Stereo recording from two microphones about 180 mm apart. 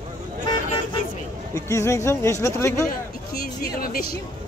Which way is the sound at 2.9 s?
55° left (ahead or behind).